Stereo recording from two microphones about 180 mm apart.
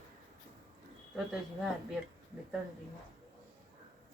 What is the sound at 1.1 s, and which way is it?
Speech, centre (ahead or behind).